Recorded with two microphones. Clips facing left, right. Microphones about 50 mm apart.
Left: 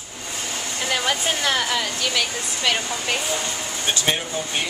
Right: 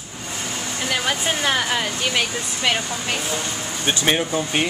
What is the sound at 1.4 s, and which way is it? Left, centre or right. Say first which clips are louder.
Speech: right 1 dB; centre.